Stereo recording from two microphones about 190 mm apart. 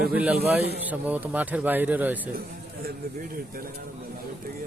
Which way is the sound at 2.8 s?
50° right (ahead or behind).